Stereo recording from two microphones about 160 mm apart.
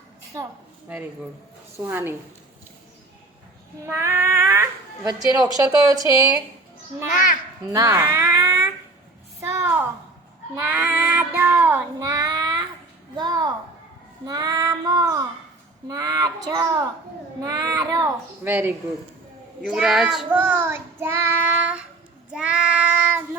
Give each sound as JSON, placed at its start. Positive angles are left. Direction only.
{"t": 1.8, "sound": "speech", "side_deg": -15}
{"t": 3.8, "sound": "speech", "side_deg": -15}
{"t": 7.6, "sound": "speech", "side_deg": -20}
{"t": 9.4, "sound": "a sound", "side_deg": -15}
{"t": 10.5, "sound": "speech", "side_deg": -10}
{"t": 11.9, "sound": "child singing", "side_deg": -25}
{"t": 18.4, "sound": "speech", "side_deg": -15}